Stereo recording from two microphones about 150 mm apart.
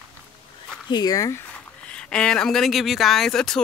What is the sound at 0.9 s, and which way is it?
Speech, 25° left (ahead or behind).